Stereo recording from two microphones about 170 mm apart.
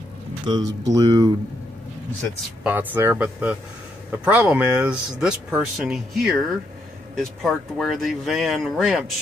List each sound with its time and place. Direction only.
0.5 s speech: 20° right (ahead or behind)
2.6 s speech: 10° right (ahead or behind)